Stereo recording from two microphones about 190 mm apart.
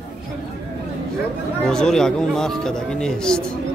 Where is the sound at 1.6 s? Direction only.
5° left (ahead or behind).